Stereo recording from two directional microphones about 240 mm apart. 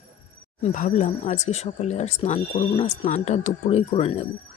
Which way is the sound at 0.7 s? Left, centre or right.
Left.